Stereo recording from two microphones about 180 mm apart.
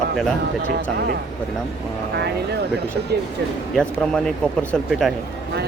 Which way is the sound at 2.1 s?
65° right (ahead or behind).